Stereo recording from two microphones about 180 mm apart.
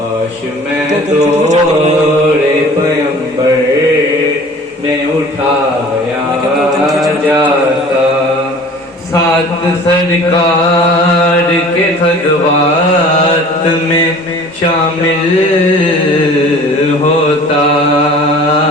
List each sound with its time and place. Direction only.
0.9 s mantra: 40° right (ahead or behind)
6.8 s mantra: centre (ahead or behind)